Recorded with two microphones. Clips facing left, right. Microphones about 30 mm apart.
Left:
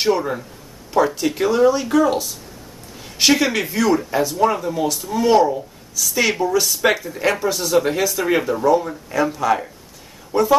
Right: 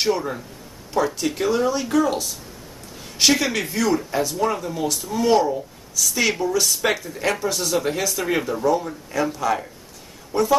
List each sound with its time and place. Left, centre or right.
0.0 s speech: centre